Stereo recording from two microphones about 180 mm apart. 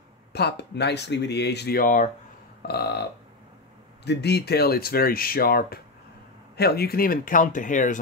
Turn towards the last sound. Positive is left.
turn(degrees=45)  # may be behind; listen again after turning